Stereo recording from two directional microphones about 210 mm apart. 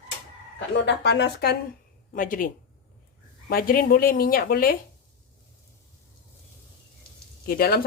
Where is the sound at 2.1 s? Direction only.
40° left (ahead or behind).